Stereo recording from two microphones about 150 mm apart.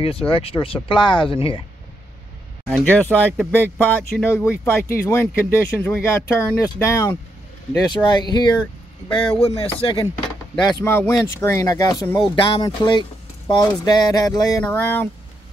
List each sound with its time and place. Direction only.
0.0 s speech: 40° left (ahead or behind)
2.9 s speech: 10° left (ahead or behind); by 10.0 s 35° left (ahead or behind)
10.6 s speech: 20° left (ahead or behind)